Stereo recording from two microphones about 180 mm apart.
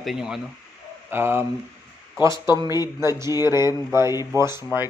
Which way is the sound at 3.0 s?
15° right (ahead or behind).